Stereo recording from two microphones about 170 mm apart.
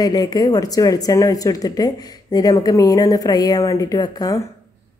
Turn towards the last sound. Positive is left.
turn(degrees=20)  # may be behind; listen again after turning